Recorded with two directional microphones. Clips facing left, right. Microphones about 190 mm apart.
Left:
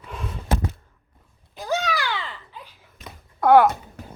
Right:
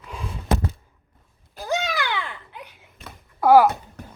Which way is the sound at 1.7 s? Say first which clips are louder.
Even; 20° right (ahead or behind).